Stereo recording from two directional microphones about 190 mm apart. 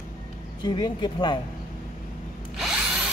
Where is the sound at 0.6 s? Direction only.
25° left (ahead or behind).